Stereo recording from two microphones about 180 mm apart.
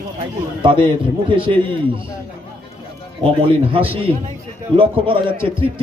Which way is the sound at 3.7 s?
30° right (ahead or behind).